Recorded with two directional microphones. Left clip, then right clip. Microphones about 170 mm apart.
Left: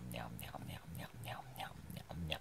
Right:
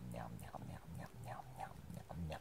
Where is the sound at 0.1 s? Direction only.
25° left (ahead or behind).